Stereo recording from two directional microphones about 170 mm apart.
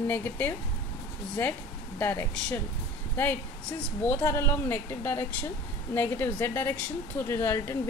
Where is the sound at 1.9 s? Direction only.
10° left (ahead or behind).